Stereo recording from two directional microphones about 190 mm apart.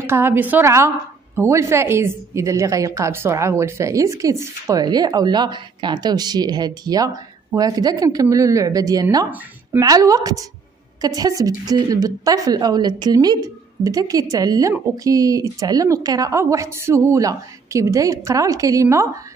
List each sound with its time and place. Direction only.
0.0 s a woman's voice: 10° right (ahead or behind)